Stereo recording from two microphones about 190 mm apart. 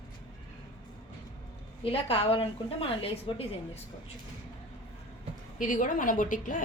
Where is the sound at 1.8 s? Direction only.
30° left (ahead or behind).